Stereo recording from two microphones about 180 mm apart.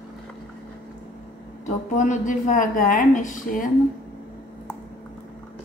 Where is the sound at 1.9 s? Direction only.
45° left (ahead or behind).